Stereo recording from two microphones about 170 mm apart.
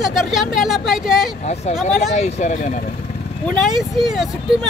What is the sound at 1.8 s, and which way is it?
Speech, 40° left (ahead or behind).